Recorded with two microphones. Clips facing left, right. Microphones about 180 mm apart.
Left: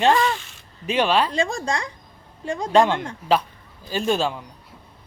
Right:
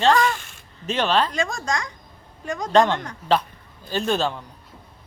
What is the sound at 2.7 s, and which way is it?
Speech, 10° left (ahead or behind).